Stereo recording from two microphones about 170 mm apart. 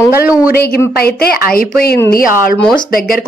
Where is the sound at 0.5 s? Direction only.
65° left (ahead or behind).